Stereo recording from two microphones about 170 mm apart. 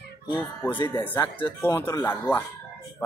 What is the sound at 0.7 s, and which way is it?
Speech, 30° left (ahead or behind).